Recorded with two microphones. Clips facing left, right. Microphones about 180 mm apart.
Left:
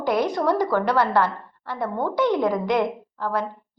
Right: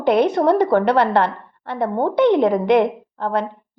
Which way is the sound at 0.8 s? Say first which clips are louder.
Right 4 dB; 65° right (ahead or behind).